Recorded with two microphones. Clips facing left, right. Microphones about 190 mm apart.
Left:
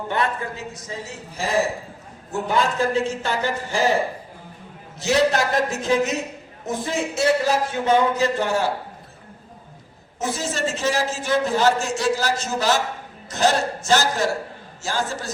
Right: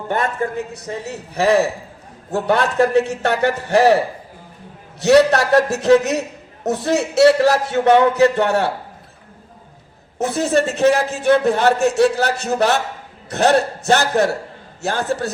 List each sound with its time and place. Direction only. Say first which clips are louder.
0.1 s a woman's voice: right 5 dB; 45° right (ahead or behind)
0.7 s a man's voice: right 6 dB; 65° right (ahead or behind)
4.9 s a man's voice: right 7 dB; 70° right (ahead or behind)
10.2 s a man's voice: right 8 dB; 60° right (ahead or behind)